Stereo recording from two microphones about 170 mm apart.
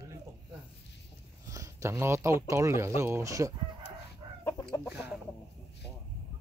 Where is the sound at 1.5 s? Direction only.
20° right (ahead or behind).